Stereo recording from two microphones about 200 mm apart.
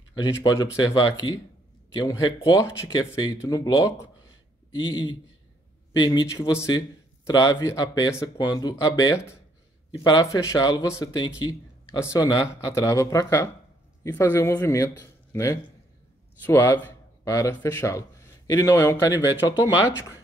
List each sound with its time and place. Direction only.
0.1 s speech: 20° left (ahead or behind)
19.6 s speech: 10° right (ahead or behind)